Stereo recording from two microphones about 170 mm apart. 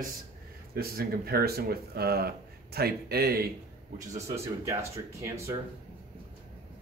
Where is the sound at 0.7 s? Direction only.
65° right (ahead or behind).